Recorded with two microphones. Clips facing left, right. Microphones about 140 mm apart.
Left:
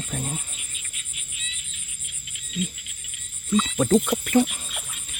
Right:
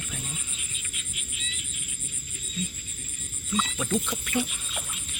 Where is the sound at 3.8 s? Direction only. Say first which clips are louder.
Left 9 dB; 45° left (ahead or behind).